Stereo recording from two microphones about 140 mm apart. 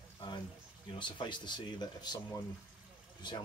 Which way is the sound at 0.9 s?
35° left (ahead or behind).